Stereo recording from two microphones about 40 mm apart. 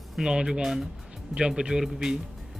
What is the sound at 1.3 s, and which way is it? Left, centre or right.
Speech, right.